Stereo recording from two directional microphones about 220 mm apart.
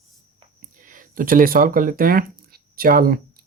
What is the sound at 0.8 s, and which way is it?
Speech, 40° right (ahead or behind).